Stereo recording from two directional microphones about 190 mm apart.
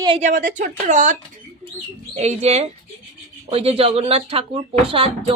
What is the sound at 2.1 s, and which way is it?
Speech, 35° right (ahead or behind).